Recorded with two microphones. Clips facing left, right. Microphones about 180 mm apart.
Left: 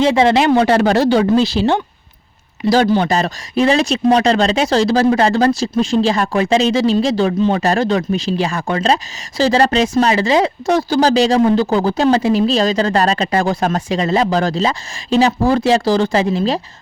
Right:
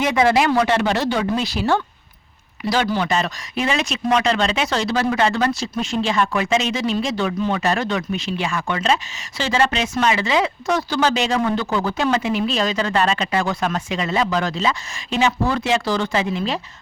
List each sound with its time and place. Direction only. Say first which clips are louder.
0.0 s speech: left 5 dB; 30° left (ahead or behind)
2.6 s speech: left 7 dB; 40° left (ahead or behind)